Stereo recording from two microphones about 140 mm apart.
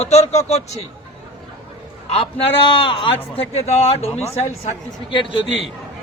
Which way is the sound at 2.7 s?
35° left (ahead or behind).